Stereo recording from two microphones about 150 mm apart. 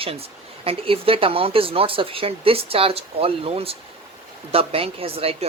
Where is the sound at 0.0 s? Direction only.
40° right (ahead or behind).